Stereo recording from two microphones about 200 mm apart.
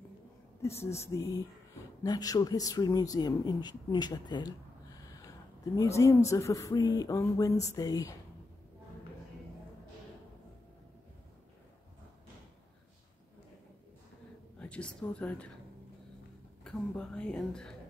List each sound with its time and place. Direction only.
0.6 s speech: 15° left (ahead or behind)
5.8 s speech: 15° left (ahead or behind)
14.6 s speech: 5° left (ahead or behind)
16.6 s speech: 5° left (ahead or behind)